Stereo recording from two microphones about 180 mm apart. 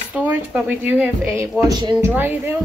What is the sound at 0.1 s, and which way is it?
Speech, 10° right (ahead or behind).